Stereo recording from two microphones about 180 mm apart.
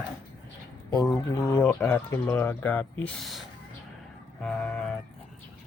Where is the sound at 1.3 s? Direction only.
20° left (ahead or behind); by 5.0 s 5° left (ahead or behind).